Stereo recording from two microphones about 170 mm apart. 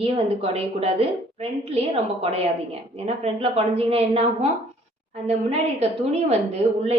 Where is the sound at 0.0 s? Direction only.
35° right (ahead or behind).